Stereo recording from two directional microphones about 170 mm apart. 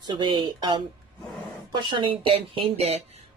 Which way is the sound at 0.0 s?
25° right (ahead or behind).